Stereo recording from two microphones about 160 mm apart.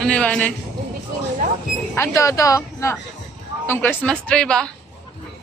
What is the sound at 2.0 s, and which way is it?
A woman's voice, 20° left (ahead or behind).